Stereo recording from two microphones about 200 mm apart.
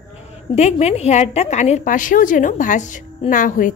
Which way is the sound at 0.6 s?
35° left (ahead or behind).